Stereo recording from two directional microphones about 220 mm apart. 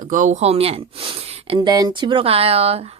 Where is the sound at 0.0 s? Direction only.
35° right (ahead or behind).